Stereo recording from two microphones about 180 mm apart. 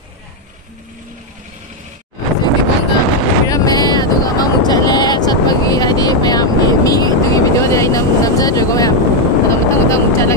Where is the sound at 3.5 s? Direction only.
20° left (ahead or behind).